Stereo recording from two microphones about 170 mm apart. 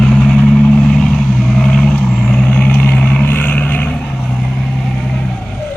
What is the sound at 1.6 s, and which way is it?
Vehicle, centre (ahead or behind).